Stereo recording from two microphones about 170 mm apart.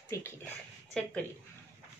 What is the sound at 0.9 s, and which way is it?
Speech, 5° left (ahead or behind).